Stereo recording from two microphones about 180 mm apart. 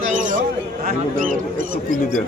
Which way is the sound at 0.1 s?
45° right (ahead or behind).